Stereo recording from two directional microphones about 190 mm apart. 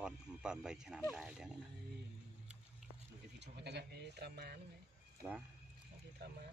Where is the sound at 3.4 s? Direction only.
60° right (ahead or behind).